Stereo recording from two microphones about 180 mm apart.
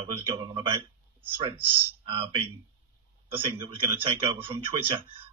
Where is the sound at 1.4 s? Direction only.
30° right (ahead or behind).